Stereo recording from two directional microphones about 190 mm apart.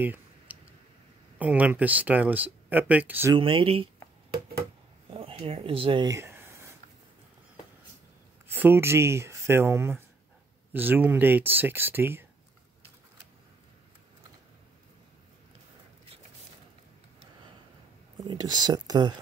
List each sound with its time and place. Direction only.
0.0 s clicking: 10° right (ahead or behind)
1.4 s speech: 10° right (ahead or behind)
3.3 s speech: 25° right (ahead or behind)
5.1 s a sound: 30° right (ahead or behind); by 6.7 s 15° right (ahead or behind)
8.5 s speech: 10° right (ahead or behind)
18.2 s speech: 20° right (ahead or behind)